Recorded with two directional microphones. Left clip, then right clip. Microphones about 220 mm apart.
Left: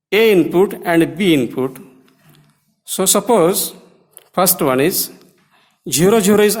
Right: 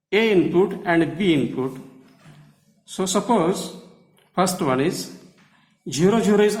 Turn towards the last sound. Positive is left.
turn(degrees=45)  # may be behind; listen again after turning